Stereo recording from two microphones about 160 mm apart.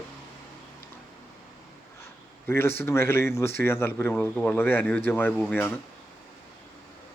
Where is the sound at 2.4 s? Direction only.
15° left (ahead or behind).